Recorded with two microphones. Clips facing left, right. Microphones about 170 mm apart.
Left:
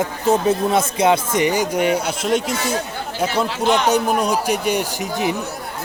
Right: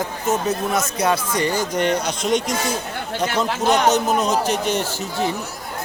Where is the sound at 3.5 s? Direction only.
45° right (ahead or behind).